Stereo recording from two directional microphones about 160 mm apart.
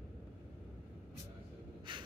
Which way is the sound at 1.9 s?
30° right (ahead or behind).